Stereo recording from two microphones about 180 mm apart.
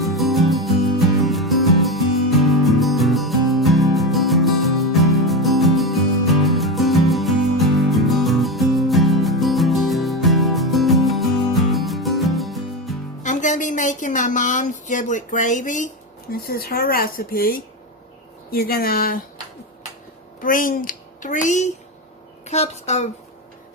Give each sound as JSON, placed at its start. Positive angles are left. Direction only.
{"t": 0.0, "sound": "music", "side_deg": 0}
{"t": 13.2, "sound": "a sound", "side_deg": 45}
{"t": 16.3, "sound": "speech", "side_deg": 55}
{"t": 20.4, "sound": "a woman's voice", "side_deg": 50}